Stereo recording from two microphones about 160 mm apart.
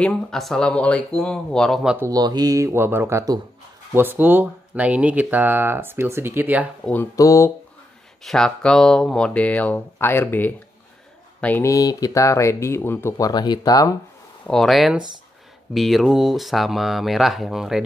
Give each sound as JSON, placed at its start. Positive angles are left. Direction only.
{"t": 0.0, "sound": "speech", "side_deg": 5}
{"t": 2.0, "sound": "speech", "side_deg": -25}
{"t": 6.8, "sound": "speech", "side_deg": 10}
{"t": 8.2, "sound": "speech", "side_deg": 5}
{"t": 13.3, "sound": "speech", "side_deg": 25}
{"t": 14.4, "sound": "speech", "side_deg": 0}